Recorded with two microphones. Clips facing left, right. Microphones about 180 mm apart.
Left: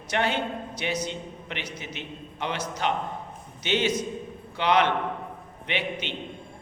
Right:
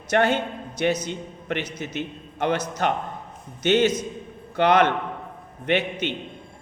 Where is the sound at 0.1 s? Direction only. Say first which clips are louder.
Right 5 dB; 50° right (ahead or behind).